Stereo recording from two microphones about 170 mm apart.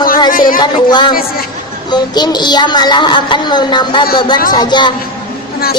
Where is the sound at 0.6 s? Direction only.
25° left (ahead or behind).